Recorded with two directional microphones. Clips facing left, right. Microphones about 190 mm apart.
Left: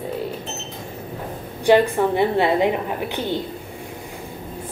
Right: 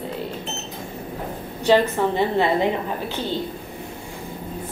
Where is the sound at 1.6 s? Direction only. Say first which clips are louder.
Left 2 dB; 15° left (ahead or behind).